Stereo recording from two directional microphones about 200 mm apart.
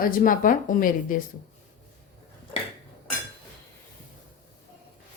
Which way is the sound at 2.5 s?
25° left (ahead or behind).